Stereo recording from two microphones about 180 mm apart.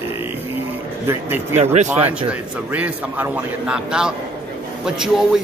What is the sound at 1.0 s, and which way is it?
Speech, 10° right (ahead or behind).